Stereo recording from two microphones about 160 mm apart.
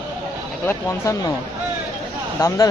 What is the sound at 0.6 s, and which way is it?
Speech, 20° left (ahead or behind).